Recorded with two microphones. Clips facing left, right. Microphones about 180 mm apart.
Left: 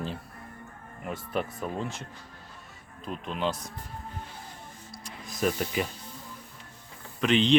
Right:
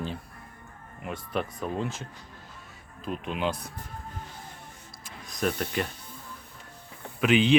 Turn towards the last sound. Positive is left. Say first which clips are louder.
# right 2 dB
turn(degrees=-5)  # may be behind; listen again after turning